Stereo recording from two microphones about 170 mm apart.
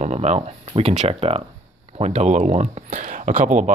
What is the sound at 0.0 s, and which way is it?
Speech, 40° right (ahead or behind).